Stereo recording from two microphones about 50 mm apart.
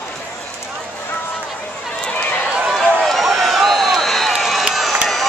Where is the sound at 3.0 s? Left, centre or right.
Centre.